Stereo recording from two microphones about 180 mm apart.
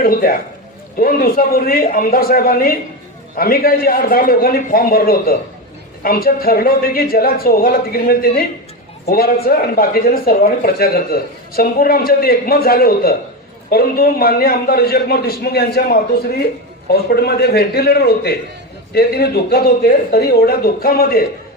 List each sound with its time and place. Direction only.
0.0 s a man's voice: 55° left (ahead or behind)